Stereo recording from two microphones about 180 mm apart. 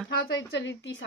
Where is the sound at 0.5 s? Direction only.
75° left (ahead or behind).